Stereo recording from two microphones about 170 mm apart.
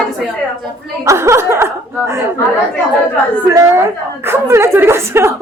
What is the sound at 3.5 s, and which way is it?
A woman's voice, 20° right (ahead or behind).